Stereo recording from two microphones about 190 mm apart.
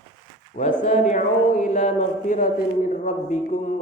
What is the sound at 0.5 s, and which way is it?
A man's voice, 40° left (ahead or behind).